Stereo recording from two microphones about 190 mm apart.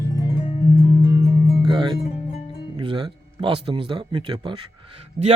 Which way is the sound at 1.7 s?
25° right (ahead or behind).